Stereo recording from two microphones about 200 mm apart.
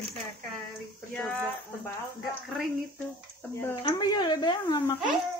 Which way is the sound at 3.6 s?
20° left (ahead or behind).